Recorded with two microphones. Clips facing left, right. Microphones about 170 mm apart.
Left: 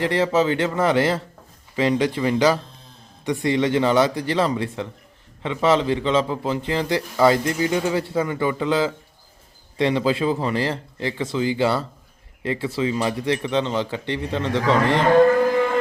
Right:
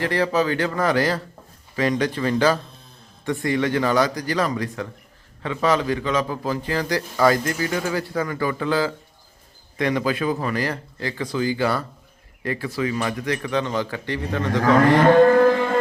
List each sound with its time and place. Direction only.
0.0 s a man's voice: 20° left (ahead or behind)